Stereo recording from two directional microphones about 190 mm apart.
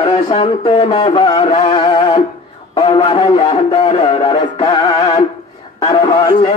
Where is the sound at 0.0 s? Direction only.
25° left (ahead or behind).